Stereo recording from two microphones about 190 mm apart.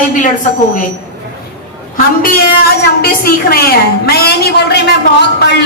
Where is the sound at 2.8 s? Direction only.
55° left (ahead or behind).